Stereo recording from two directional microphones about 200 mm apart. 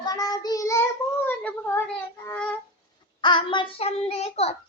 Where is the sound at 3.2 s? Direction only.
25° left (ahead or behind).